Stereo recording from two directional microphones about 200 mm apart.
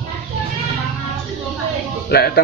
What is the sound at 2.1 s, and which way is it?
Speech, 50° left (ahead or behind).